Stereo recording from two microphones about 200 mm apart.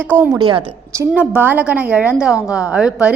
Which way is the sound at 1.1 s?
10° right (ahead or behind).